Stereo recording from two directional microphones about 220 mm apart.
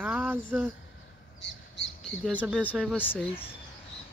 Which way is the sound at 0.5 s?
10° right (ahead or behind).